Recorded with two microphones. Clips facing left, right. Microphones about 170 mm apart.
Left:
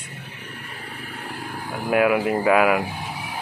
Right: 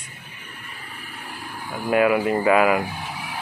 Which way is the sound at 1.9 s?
5° left (ahead or behind).